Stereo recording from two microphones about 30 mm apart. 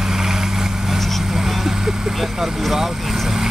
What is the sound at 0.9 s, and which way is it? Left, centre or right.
Vehicle, centre.